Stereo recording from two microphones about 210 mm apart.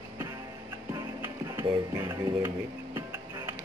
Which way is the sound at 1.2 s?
10° right (ahead or behind).